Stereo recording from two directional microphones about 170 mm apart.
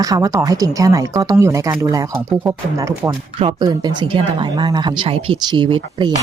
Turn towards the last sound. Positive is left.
turn(degrees=-30)  # may be behind; listen again after turning